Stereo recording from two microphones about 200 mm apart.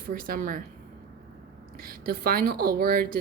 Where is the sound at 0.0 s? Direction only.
45° right (ahead or behind).